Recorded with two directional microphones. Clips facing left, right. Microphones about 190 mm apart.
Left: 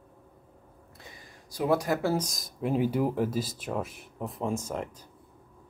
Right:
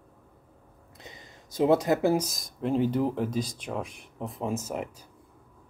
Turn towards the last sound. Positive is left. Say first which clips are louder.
# right 1 dB
turn(degrees=-5)  # may be behind; listen again after turning